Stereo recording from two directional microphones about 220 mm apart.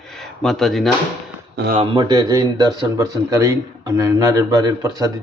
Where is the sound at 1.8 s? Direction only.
20° right (ahead or behind).